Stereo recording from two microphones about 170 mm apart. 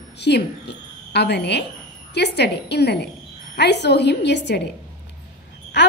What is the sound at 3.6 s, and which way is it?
A woman's voice, 85° left.